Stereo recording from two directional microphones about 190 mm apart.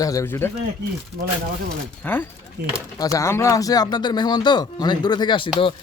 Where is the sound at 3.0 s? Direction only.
15° left (ahead or behind).